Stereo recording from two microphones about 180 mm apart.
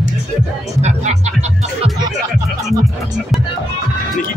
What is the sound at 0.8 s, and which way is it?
Speech, 40° right (ahead or behind).